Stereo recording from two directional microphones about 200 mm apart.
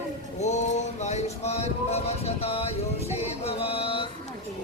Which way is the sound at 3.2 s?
30° left (ahead or behind).